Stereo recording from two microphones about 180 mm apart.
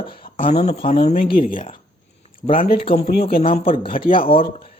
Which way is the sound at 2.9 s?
65° left (ahead or behind).